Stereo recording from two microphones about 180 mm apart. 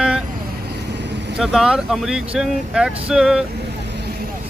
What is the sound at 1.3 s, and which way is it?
Speech, 5° right (ahead or behind).